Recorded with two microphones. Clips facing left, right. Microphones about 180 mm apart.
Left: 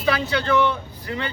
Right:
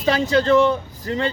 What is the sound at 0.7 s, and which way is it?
Speech, 40° right (ahead or behind).